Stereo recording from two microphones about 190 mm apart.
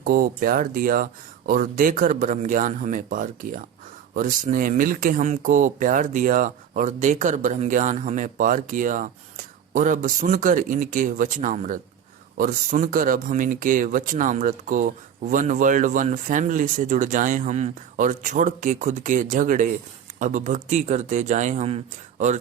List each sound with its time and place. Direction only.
0.0 s a man's voice: 50° right (ahead or behind)